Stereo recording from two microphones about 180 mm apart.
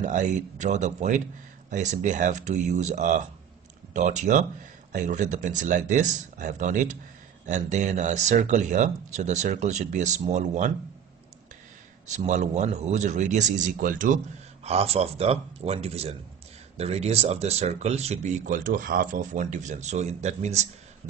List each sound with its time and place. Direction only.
0.0 s a man's voice: 45° right (ahead or behind)
12.1 s a man's voice: 40° right (ahead or behind)